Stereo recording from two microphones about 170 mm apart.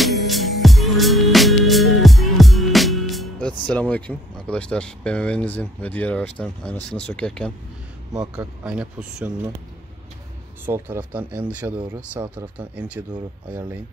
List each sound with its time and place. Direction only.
0.0 s music: centre (ahead or behind)
8.6 s speech: 5° right (ahead or behind)
10.6 s speech: 10° right (ahead or behind)